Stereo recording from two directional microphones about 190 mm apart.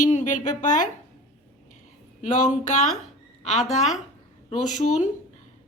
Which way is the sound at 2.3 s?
40° left (ahead or behind).